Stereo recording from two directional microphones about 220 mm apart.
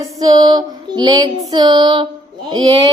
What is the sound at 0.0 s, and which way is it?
Female singing, 15° right (ahead or behind).